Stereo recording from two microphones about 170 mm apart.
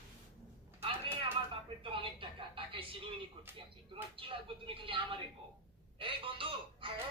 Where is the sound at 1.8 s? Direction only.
30° right (ahead or behind).